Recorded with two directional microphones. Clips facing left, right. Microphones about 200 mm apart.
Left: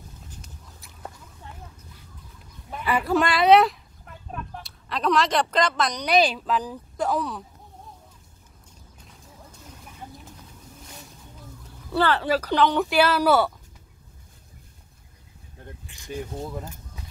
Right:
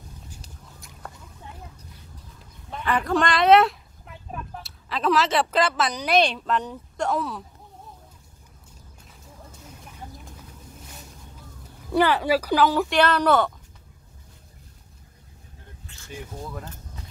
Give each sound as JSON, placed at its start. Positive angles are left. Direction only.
{"t": 2.7, "sound": "speech", "side_deg": 10}
{"t": 11.9, "sound": "speech", "side_deg": -15}
{"t": 12.9, "sound": "speech", "side_deg": 5}
{"t": 15.9, "sound": "a sound", "side_deg": 15}
{"t": 16.3, "sound": "speech", "side_deg": 25}